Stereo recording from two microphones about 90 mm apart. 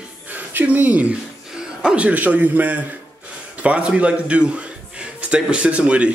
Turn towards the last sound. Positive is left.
turn(degrees=-15)  # may be behind; listen again after turning